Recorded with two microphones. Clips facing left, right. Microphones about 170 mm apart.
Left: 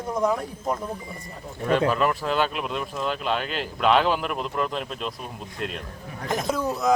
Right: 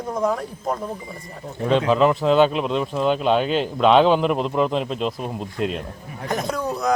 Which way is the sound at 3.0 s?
Centre (ahead or behind).